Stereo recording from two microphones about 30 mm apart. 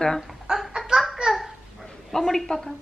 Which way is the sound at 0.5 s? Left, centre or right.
Centre.